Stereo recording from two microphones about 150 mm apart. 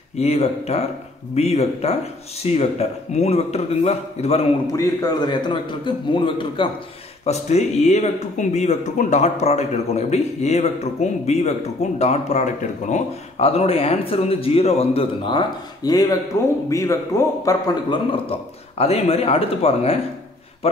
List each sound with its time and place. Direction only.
0.2 s speech: 45° left (ahead or behind)
4.7 s a man's voice: 25° left (ahead or behind)
7.2 s speech: 45° left (ahead or behind)
15.2 s speech: 30° left (ahead or behind)
17.8 s a man's voice: 35° left (ahead or behind)